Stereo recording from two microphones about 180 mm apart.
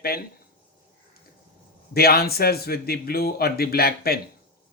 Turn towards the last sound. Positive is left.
turn(degrees=60)  # may be behind; listen again after turning